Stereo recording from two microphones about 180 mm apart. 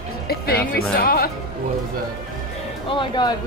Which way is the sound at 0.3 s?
60° left (ahead or behind).